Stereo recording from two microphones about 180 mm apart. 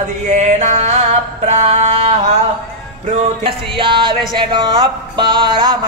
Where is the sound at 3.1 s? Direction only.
30° right (ahead or behind).